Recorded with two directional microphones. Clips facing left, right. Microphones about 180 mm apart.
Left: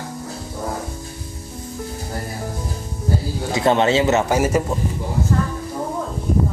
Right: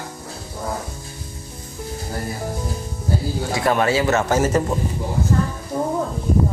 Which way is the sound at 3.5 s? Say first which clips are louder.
Left 3 dB; 25° left (ahead or behind).